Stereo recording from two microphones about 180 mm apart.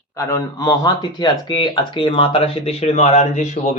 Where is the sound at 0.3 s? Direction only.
20° left (ahead or behind).